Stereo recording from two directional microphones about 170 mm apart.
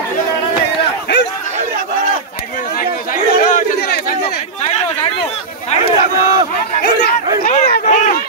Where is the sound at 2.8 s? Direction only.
55° left (ahead or behind).